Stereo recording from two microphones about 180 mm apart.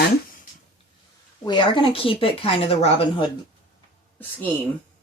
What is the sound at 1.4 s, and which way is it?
Speech, 25° left (ahead or behind).